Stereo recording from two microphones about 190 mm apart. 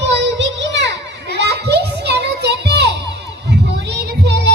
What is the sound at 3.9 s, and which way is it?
Music, 60° right (ahead or behind).